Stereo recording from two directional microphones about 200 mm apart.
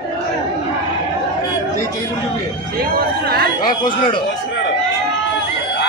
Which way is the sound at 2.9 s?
50° right (ahead or behind).